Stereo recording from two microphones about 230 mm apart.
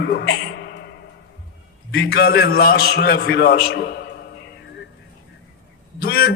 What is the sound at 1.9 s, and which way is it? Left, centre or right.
A man's voice, left.